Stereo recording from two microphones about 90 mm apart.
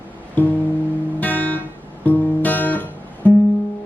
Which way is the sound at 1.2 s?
20° left (ahead or behind).